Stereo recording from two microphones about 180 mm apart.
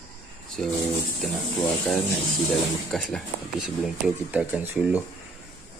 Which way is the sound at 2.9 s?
Centre (ahead or behind).